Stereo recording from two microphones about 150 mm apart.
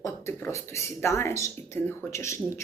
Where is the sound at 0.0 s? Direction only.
20° left (ahead or behind).